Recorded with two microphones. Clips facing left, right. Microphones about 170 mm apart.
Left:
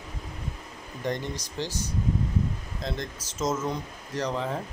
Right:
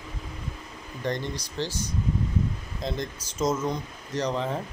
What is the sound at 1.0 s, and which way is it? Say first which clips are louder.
Speech: right 1 dB; 10° left (ahead or behind).